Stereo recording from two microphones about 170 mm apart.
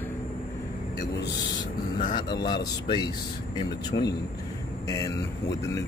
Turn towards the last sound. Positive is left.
turn(degrees=15)  # may be behind; listen again after turning